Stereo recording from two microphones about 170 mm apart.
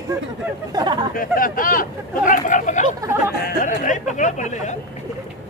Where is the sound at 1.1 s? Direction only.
55° left (ahead or behind).